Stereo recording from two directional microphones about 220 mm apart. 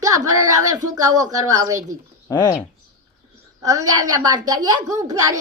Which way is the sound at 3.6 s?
15° right (ahead or behind).